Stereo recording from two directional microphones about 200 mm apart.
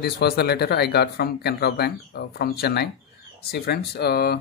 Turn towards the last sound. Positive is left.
turn(degrees=50)  # may be behind; listen again after turning